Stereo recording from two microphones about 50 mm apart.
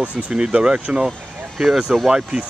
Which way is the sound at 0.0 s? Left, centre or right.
Right.